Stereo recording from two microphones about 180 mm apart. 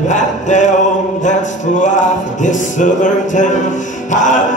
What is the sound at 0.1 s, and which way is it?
Music, 45° left (ahead or behind).